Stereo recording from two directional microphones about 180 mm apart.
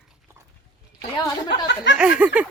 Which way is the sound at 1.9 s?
5° right (ahead or behind).